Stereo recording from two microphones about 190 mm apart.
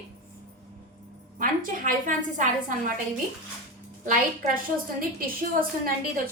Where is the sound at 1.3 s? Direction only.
45° right (ahead or behind).